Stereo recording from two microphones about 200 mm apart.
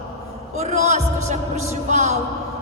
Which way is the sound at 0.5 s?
35° right (ahead or behind).